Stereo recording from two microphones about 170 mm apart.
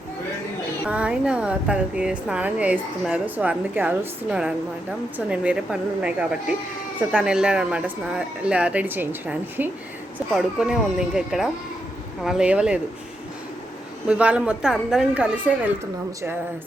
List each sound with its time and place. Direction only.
0.9 s a woman's voice: 5° right (ahead or behind)
14.1 s speech: 5° right (ahead or behind)